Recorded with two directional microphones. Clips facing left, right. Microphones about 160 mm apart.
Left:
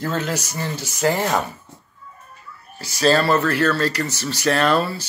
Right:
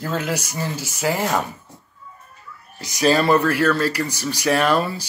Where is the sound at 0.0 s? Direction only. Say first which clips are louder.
Even; 10° right (ahead or behind).